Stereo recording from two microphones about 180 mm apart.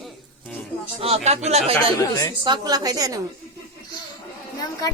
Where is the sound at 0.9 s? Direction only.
35° right (ahead or behind).